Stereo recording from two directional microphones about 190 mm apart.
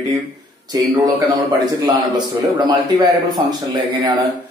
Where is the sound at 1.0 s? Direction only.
20° right (ahead or behind).